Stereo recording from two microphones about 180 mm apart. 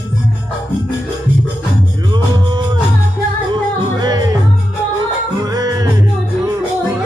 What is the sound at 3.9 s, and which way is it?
Music, 20° right (ahead or behind).